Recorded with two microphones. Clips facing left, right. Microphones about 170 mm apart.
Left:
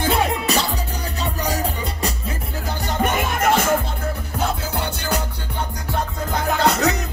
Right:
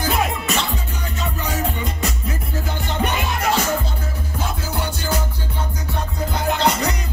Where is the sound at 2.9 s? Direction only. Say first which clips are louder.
Left 2 dB; 45° left (ahead or behind).